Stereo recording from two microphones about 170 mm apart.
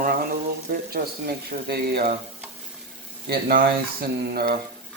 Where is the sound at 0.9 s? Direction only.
65° right (ahead or behind).